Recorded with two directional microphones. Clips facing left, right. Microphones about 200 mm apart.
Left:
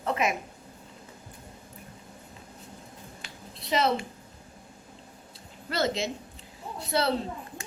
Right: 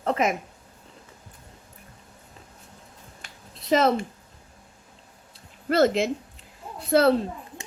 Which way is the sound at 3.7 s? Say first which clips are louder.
Right 5 dB; 45° right (ahead or behind).